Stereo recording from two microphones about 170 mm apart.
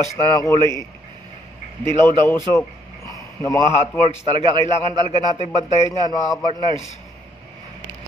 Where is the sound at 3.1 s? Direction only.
20° left (ahead or behind).